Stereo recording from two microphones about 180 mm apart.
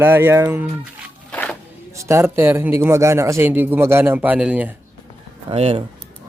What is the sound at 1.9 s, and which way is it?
A man's voice, 15° right (ahead or behind).